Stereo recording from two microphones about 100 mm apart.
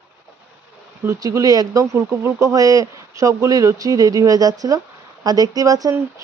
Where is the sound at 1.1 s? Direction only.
35° right (ahead or behind).